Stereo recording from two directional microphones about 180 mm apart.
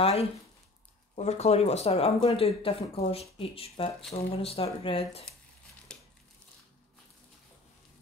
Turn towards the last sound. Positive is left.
turn(degrees=5)  # may be behind; listen again after turning